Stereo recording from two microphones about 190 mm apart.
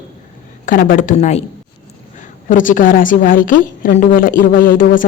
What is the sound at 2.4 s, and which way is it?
A woman's voice, 45° left (ahead or behind).